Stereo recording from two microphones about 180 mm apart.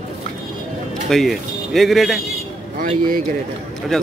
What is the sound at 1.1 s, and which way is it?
A man's voice, centre (ahead or behind).